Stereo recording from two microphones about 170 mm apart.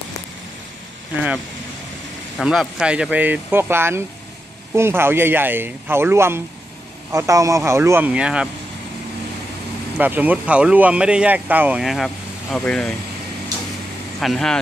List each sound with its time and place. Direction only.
2.3 s speech: centre (ahead or behind)
9.9 s speech: 10° right (ahead or behind)
14.2 s speech: centre (ahead or behind)